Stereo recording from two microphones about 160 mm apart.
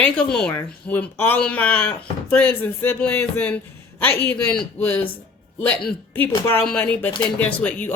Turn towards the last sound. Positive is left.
turn(degrees=10)  # may be behind; listen again after turning